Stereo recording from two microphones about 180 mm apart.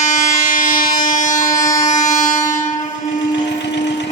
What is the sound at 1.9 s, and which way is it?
Train, 45° left (ahead or behind).